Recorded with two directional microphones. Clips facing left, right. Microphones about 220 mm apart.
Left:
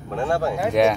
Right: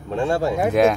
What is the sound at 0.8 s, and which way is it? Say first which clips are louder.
Speech: right 1 dB; centre (ahead or behind).